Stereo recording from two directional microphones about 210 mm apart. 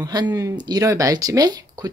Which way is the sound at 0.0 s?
20° right (ahead or behind).